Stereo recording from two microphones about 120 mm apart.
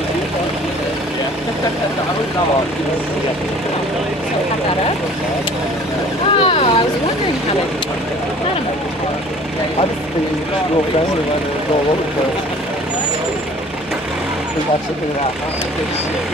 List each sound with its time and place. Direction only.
6.3 s boat: 50° left (ahead or behind)